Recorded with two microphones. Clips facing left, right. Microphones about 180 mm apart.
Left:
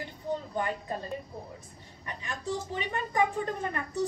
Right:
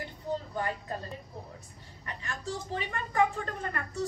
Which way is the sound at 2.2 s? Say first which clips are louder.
Left 3 dB; 15° left (ahead or behind).